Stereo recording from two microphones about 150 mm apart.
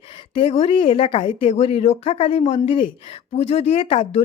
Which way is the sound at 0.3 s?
40° left (ahead or behind).